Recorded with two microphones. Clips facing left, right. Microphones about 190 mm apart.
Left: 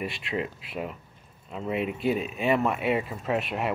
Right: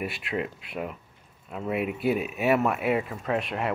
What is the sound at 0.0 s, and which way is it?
Speech, centre (ahead or behind).